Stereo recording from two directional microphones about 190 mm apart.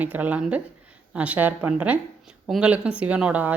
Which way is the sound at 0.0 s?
10° right (ahead or behind).